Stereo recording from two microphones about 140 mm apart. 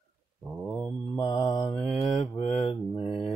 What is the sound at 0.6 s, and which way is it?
Mantra, 5° left (ahead or behind).